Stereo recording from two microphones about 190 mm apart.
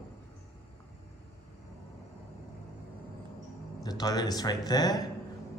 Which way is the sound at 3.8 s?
20° left (ahead or behind).